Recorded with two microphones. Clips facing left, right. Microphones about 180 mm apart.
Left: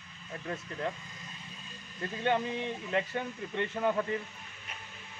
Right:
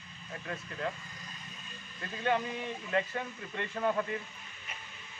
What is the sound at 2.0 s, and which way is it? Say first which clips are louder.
Speech: left 1 dB; 25° left (ahead or behind).